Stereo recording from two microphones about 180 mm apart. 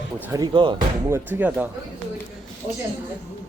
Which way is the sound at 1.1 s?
10° right (ahead or behind).